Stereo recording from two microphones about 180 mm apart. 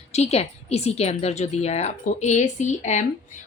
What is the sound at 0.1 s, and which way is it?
Speech, 35° left (ahead or behind).